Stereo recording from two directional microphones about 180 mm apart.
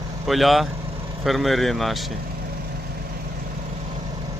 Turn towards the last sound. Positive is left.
turn(degrees=-60)  # may be behind; listen again after turning